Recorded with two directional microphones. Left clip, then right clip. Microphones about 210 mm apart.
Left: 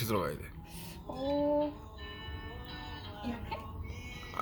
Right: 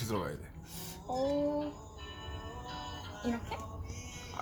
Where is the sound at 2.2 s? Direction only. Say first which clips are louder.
Right 1 dB; 50° right (ahead or behind).